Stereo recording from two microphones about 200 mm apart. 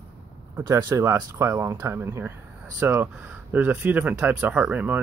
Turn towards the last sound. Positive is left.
turn(degrees=-10)  # may be behind; listen again after turning